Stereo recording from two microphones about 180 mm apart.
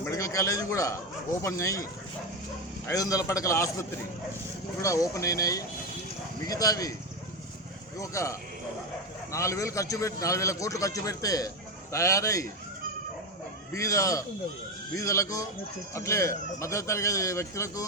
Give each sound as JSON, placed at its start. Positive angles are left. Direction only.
{"t": 0.0, "sound": "a man's voice", "side_deg": 15}
{"t": 7.9, "sound": "a man's voice", "side_deg": 15}
{"t": 13.7, "sound": "a man's voice", "side_deg": 15}